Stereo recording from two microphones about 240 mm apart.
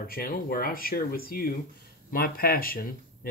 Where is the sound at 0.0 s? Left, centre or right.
Left.